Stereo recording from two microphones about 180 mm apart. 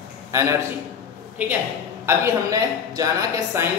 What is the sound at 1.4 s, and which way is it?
A man's voice, 10° right (ahead or behind).